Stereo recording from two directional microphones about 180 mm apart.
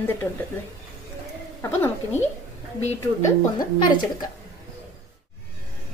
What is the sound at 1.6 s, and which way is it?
Speech, 10° left (ahead or behind).